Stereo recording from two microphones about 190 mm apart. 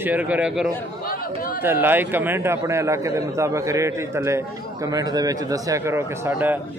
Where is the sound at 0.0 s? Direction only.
10° right (ahead or behind).